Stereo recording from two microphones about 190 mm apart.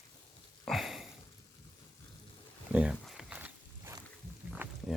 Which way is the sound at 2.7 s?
5° right (ahead or behind).